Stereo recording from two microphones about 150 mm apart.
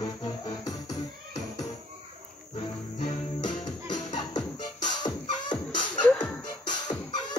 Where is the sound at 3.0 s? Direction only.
30° left (ahead or behind).